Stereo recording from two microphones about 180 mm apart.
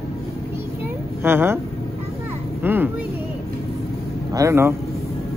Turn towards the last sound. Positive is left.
turn(degrees=-15)  # may be behind; listen again after turning